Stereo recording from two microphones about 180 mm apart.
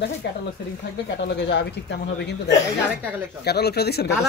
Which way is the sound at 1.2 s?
75° left (ahead or behind).